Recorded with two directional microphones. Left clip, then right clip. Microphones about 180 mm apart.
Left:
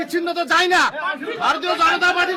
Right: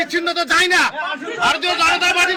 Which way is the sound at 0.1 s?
30° left (ahead or behind).